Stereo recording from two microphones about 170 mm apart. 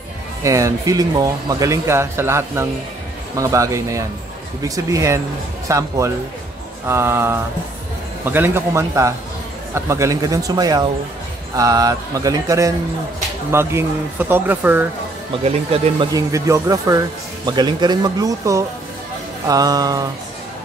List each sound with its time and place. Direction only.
0.4 s speech: 20° right (ahead or behind)
15.4 s speech: 35° right (ahead or behind)
16.1 s speech: 20° right (ahead or behind)